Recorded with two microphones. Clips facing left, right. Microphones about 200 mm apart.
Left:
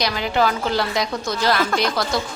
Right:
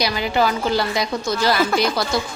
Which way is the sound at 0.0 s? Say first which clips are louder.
Right 1 dB; 5° right (ahead or behind).